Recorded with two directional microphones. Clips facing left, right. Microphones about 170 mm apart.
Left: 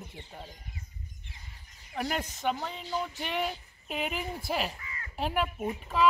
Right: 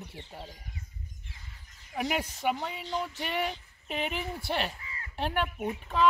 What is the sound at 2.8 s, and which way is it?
A woman's voice, 5° left (ahead or behind).